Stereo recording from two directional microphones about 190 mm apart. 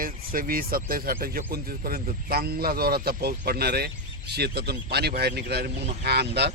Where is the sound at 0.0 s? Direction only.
50° right (ahead or behind).